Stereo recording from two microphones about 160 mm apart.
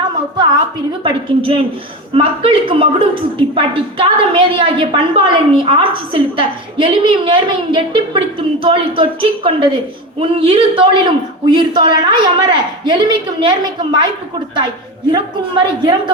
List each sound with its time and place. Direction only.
1.0 s a woman's voice: 35° right (ahead or behind)
15.1 s a woman's voice: 30° right (ahead or behind)